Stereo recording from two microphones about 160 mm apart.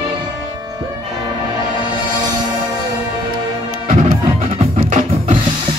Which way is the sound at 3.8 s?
35° right (ahead or behind).